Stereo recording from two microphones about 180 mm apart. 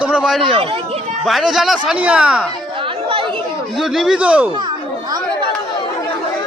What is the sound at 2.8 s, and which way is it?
Chatter, 30° right (ahead or behind).